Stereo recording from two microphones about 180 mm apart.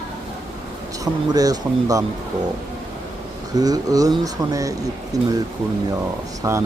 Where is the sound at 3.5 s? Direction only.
20° right (ahead or behind).